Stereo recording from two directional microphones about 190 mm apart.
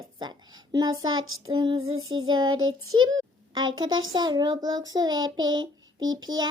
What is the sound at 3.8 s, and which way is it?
Music, 90° right.